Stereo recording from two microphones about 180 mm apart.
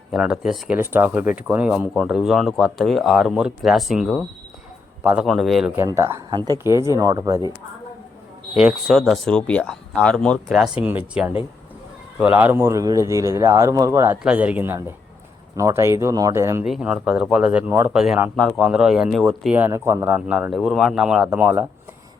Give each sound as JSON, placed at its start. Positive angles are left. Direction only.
{"t": 0.1, "sound": "speech", "side_deg": 0}
{"t": 5.7, "sound": "speech", "side_deg": -15}
{"t": 8.5, "sound": "speech", "side_deg": 0}
{"t": 10.8, "sound": "speech", "side_deg": -10}
{"t": 16.6, "sound": "speech", "side_deg": -5}